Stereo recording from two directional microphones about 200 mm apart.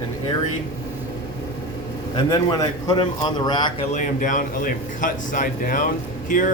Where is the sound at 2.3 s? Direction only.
20° left (ahead or behind).